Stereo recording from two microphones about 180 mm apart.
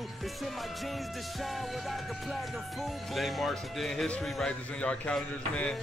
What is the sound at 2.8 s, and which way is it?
Speech, centre (ahead or behind).